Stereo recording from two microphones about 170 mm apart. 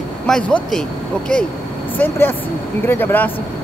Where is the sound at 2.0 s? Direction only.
10° left (ahead or behind).